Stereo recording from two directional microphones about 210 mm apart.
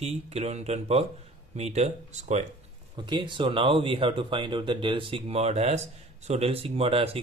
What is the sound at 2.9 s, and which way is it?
Speech, 20° right (ahead or behind).